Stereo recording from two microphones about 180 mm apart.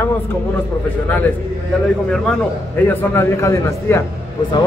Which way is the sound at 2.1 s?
5° left (ahead or behind).